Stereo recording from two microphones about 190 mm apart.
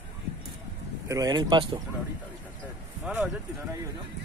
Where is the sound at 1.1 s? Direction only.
20° right (ahead or behind).